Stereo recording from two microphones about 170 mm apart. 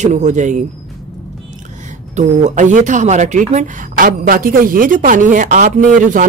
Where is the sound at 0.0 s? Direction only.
45° right (ahead or behind).